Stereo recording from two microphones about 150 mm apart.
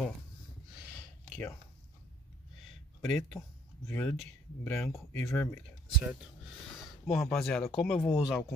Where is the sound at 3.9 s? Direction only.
15° left (ahead or behind).